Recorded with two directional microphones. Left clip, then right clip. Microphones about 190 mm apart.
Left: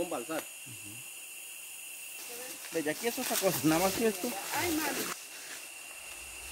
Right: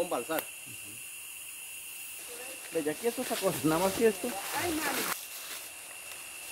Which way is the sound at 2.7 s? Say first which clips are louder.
Right 2 dB; 30° left (ahead or behind).